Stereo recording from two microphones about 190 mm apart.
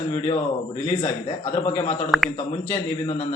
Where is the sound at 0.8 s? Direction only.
35° left (ahead or behind).